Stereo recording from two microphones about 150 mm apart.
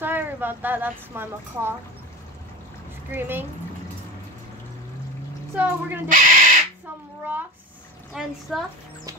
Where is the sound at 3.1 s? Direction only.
15° right (ahead or behind).